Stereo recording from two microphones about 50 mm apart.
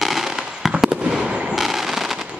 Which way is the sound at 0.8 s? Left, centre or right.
Centre.